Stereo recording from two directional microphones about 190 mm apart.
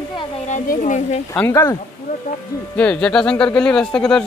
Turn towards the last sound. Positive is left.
turn(degrees=5)  # may be behind; listen again after turning